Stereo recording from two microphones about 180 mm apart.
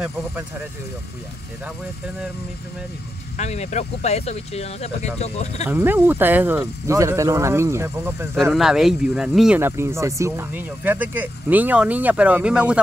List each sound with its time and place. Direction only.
3.3 s speech: 40° left (ahead or behind)
5.7 s speech: 10° right (ahead or behind)
8.5 s speech: centre (ahead or behind)
9.6 s speech: 15° right (ahead or behind)